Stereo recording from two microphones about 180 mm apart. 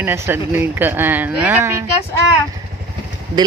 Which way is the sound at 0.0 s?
10° right (ahead or behind).